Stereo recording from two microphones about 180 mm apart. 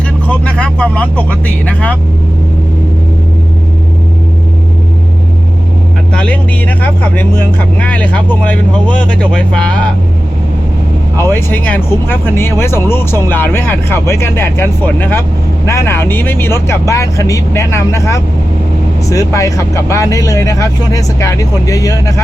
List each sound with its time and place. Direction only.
0.3 s speech: 5° left (ahead or behind)
6.1 s speech: 5° left (ahead or behind)
11.2 s speech: 10° left (ahead or behind)